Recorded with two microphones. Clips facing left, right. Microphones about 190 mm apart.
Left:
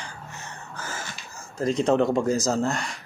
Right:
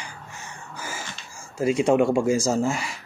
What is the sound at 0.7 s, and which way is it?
Crow, 10° right (ahead or behind).